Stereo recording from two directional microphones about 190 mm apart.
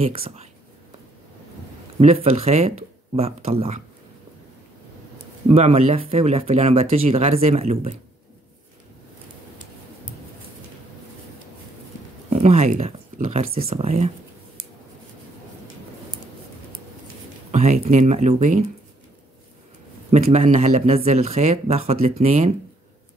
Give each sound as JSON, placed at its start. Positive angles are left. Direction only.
{"t": 0.0, "sound": "speech", "side_deg": -30}
{"t": 2.0, "sound": "speech", "side_deg": -35}
{"t": 5.5, "sound": "speech", "side_deg": -35}
{"t": 12.3, "sound": "speech", "side_deg": -35}
{"t": 17.5, "sound": "speech", "side_deg": -35}
{"t": 20.1, "sound": "speech", "side_deg": -35}